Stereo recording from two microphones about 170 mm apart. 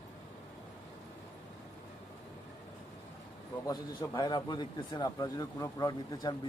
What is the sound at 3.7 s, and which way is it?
Speech, 25° left (ahead or behind).